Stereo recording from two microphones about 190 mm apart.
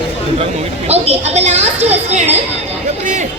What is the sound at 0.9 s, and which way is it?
A woman's voice, 35° right (ahead or behind).